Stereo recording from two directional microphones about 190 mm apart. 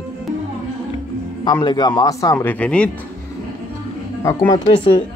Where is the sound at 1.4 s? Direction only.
20° left (ahead or behind).